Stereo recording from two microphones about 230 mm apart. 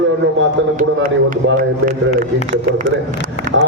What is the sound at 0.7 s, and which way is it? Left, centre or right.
Speech, right.